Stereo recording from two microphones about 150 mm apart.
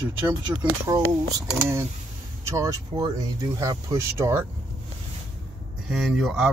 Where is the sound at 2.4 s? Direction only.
20° right (ahead or behind).